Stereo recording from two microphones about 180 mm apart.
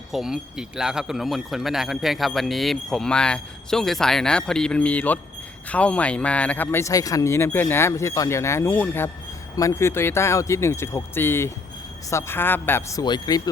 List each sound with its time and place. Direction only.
0.1 s speech: centre (ahead or behind); by 13.5 s 20° left (ahead or behind)